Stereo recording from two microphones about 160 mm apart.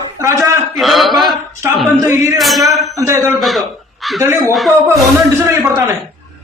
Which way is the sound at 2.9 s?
20° right (ahead or behind).